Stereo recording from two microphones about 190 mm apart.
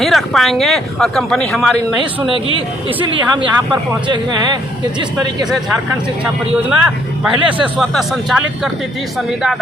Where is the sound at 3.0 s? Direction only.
25° right (ahead or behind).